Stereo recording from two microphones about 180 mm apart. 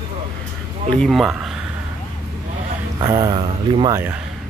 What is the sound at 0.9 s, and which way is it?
Speech, centre (ahead or behind).